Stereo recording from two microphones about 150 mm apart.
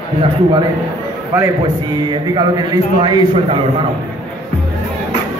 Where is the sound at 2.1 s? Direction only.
25° right (ahead or behind).